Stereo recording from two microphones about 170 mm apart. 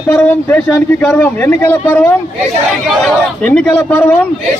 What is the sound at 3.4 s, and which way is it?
Speech, 10° left (ahead or behind).